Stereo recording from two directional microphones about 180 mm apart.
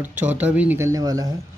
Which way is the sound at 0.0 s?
10° right (ahead or behind).